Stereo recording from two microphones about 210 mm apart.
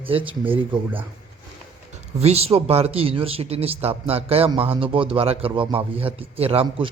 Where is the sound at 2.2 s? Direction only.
30° right (ahead or behind).